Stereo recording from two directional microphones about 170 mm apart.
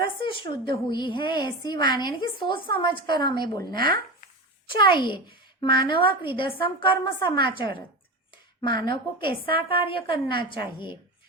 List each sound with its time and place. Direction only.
0.0 s a woman's voice: 30° left (ahead or behind)